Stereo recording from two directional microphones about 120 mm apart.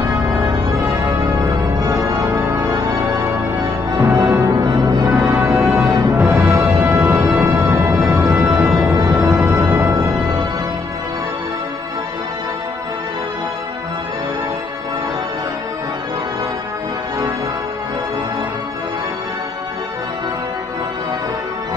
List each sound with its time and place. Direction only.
0.0 s music: 25° right (ahead or behind)